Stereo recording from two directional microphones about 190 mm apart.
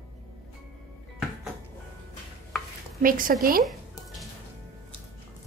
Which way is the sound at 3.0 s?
45° right (ahead or behind).